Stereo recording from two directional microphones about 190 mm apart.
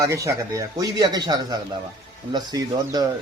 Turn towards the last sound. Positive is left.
turn(degrees=-20)  # may be behind; listen again after turning